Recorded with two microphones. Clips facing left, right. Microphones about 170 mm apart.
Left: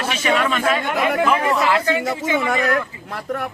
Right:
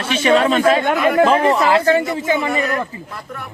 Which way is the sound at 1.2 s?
30° right (ahead or behind).